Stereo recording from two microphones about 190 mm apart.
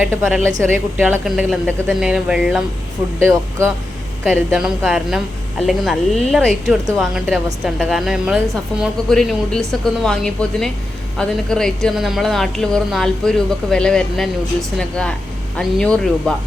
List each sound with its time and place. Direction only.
0.0 s speech: 15° right (ahead or behind)
0.3 s speech: centre (ahead or behind)
0.7 s speech: 10° right (ahead or behind)
4.2 s speech: 5° right (ahead or behind)